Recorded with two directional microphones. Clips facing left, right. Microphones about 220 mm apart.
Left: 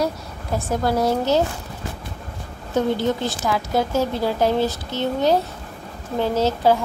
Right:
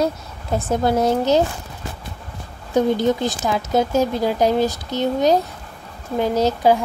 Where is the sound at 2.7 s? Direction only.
15° right (ahead or behind).